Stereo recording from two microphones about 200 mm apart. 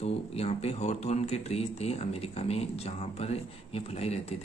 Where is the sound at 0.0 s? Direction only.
30° left (ahead or behind).